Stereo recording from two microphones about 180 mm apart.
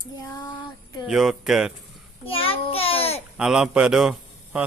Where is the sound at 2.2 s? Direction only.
30° left (ahead or behind).